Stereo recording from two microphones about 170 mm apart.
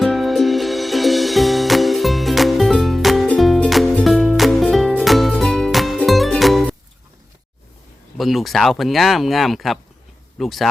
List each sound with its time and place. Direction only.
0.0 s music: centre (ahead or behind)
8.2 s speech: centre (ahead or behind)